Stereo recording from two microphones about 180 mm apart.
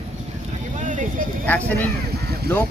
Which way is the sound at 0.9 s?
45° right (ahead or behind).